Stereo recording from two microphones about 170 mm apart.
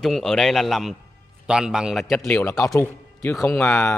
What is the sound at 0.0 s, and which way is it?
A man's voice, 5° left (ahead or behind).